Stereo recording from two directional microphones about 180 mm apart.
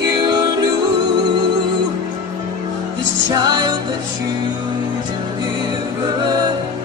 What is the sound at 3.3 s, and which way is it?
Music, 20° right (ahead or behind).